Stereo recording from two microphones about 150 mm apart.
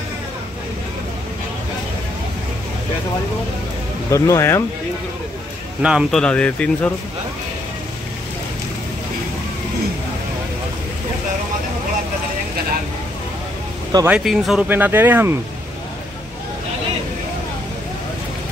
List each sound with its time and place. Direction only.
4.1 s speech: 20° left (ahead or behind)
5.8 s a man's voice: 5° right (ahead or behind)
6.1 s speech: 5° left (ahead or behind)
14.0 s speech: 5° right (ahead or behind)
14.7 s speech: 15° right (ahead or behind)